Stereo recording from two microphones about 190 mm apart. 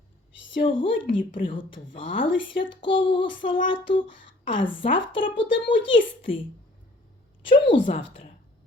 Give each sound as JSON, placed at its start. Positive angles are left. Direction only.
{"t": 0.8, "sound": "a woman's voice", "side_deg": 30}
{"t": 7.4, "sound": "a woman's voice", "side_deg": 30}